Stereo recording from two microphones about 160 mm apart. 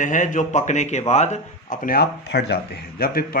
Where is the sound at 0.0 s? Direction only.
50° left (ahead or behind).